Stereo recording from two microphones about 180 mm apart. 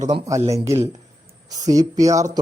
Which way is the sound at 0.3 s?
15° right (ahead or behind).